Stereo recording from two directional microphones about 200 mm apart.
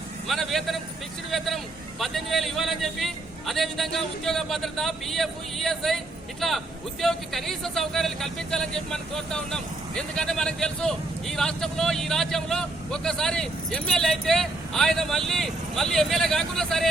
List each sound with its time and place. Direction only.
0.3 s speech: centre (ahead or behind)